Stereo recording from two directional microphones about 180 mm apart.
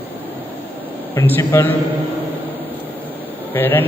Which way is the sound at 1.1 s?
15° left (ahead or behind).